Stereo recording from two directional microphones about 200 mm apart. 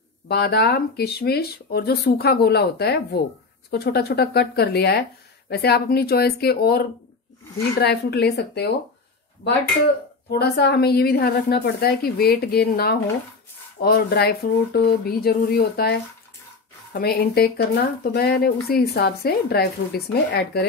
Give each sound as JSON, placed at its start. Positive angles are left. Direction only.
{"t": 0.3, "sound": "speech", "side_deg": 55}
{"t": 7.8, "sound": "a woman's voice", "side_deg": 55}
{"t": 10.4, "sound": "speech", "side_deg": 55}